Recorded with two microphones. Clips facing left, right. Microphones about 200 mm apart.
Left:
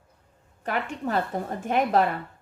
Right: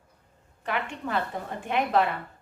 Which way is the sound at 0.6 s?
45° left (ahead or behind).